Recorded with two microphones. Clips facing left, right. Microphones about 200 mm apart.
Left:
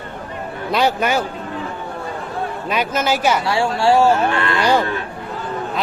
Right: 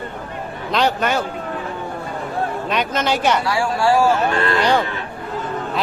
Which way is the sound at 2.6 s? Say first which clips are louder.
Left 3 dB; 5° left (ahead or behind).